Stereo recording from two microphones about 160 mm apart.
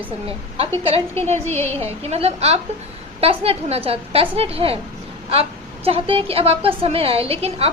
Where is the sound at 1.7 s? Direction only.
40° right (ahead or behind).